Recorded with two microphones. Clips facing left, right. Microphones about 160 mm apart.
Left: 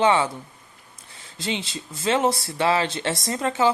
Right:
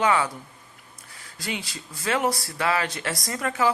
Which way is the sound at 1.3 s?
25° left (ahead or behind).